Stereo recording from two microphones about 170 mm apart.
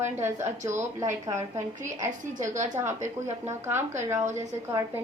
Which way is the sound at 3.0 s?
40° right (ahead or behind).